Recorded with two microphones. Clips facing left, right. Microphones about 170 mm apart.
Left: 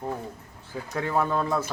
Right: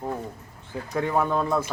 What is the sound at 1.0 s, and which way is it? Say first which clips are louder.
Speech: right 2 dB; 20° right (ahead or behind).